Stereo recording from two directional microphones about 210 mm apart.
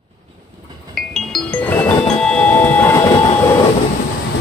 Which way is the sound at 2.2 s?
5° left (ahead or behind).